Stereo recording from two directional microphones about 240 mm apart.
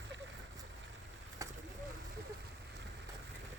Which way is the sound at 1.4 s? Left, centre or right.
Centre.